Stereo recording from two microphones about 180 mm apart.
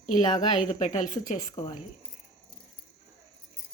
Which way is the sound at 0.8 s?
40° left (ahead or behind).